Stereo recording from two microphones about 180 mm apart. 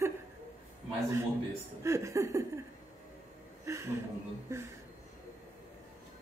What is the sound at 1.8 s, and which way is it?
Speech, 15° right (ahead or behind).